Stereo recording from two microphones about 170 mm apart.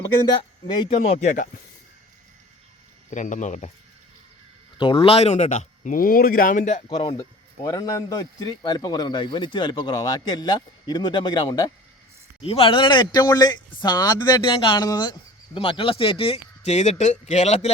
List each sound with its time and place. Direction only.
0.9 s speech: 40° left (ahead or behind)
3.1 s speech: 45° left (ahead or behind)
4.8 s speech: 30° left (ahead or behind)
7.2 s a man's voice: 20° left (ahead or behind); by 17.7 s 40° left (ahead or behind)